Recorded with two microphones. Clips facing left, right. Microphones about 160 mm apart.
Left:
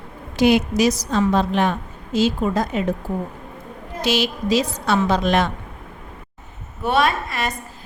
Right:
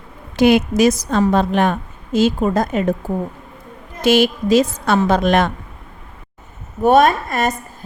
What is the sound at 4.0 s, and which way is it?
A woman's voice, 50° right (ahead or behind).